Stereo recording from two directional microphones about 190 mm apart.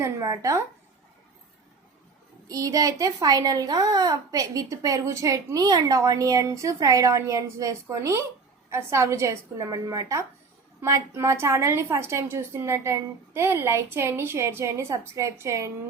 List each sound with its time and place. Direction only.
0.0 s a woman's voice: 15° right (ahead or behind)
2.5 s a woman's voice: 20° right (ahead or behind)